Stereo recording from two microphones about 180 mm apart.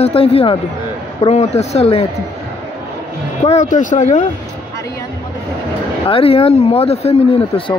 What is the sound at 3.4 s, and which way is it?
Speech, 40° left (ahead or behind).